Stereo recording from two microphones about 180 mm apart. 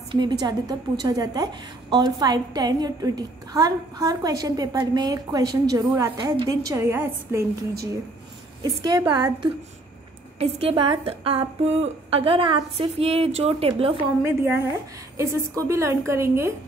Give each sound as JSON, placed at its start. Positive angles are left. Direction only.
{"t": 0.1, "sound": "a woman's voice", "side_deg": -25}
{"t": 8.6, "sound": "a woman's voice", "side_deg": -20}
{"t": 15.1, "sound": "a woman's voice", "side_deg": -15}